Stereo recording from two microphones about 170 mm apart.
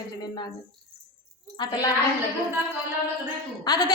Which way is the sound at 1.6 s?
25° left (ahead or behind).